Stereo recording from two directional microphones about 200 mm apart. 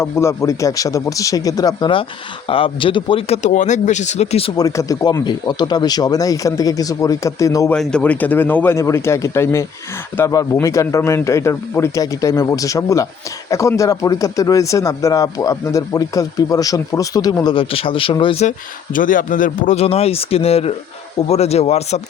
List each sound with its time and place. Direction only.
0.0 s speech: 15° left (ahead or behind)
7.7 s speech: 5° left (ahead or behind); by 18.5 s 30° left (ahead or behind)
18.9 s speech: 40° left (ahead or behind)